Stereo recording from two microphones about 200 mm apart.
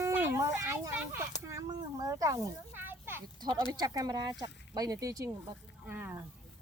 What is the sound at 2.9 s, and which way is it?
Children playing, 10° right (ahead or behind).